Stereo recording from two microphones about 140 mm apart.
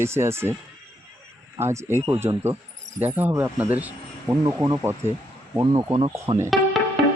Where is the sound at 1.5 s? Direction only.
15° right (ahead or behind).